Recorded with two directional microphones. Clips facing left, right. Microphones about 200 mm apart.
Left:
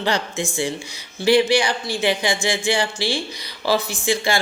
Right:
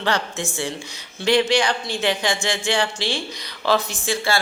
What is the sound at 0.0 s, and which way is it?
Speech, 10° left (ahead or behind).